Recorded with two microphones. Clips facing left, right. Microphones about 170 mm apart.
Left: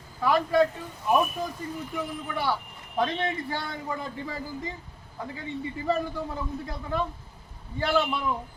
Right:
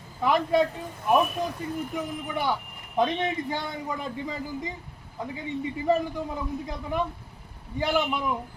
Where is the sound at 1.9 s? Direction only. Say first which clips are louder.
Right 1 dB; 20° right (ahead or behind).